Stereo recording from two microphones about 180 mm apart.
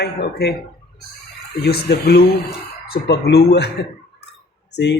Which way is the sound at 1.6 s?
60° left (ahead or behind).